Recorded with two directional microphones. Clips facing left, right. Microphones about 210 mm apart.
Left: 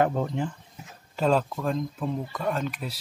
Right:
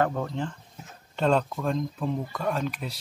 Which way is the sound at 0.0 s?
20° left (ahead or behind).